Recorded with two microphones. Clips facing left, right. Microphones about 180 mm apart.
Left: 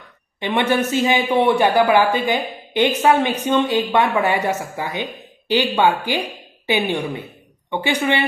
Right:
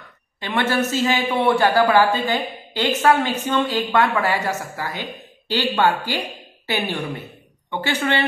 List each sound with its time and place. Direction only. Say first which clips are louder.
0.4 s speech: left 2 dB; 20° left (ahead or behind)